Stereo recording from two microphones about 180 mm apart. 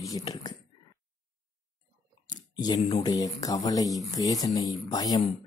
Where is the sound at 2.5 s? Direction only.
25° left (ahead or behind).